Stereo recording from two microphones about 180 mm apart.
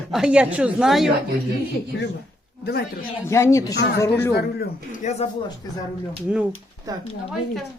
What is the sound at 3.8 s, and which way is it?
Speech, 65° left (ahead or behind).